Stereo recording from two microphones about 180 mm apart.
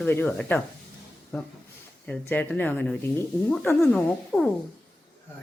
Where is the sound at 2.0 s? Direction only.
10° left (ahead or behind).